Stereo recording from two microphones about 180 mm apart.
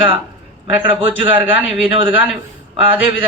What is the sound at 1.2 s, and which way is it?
Speech, 30° right (ahead or behind).